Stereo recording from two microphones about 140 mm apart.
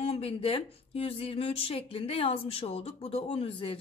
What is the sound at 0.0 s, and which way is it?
Speech, 45° left (ahead or behind).